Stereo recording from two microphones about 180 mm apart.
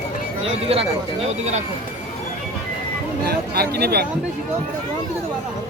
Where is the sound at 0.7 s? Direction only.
35° right (ahead or behind).